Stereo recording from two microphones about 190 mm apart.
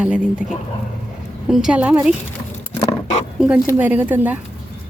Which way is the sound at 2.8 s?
30° left (ahead or behind).